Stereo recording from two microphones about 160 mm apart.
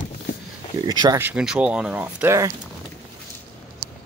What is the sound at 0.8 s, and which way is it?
Speech, 25° right (ahead or behind).